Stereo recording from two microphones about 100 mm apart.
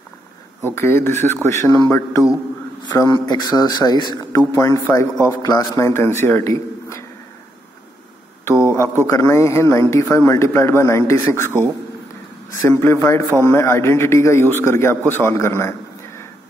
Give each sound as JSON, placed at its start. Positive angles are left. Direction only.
{"t": 0.7, "sound": "a man's voice", "side_deg": 25}
{"t": 1.7, "sound": "a man's voice", "side_deg": 40}
{"t": 8.5, "sound": "a sound", "side_deg": 25}
{"t": 9.0, "sound": "a man's voice", "side_deg": 30}